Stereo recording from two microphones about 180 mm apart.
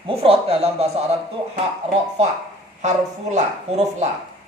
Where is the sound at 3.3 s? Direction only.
40° right (ahead or behind).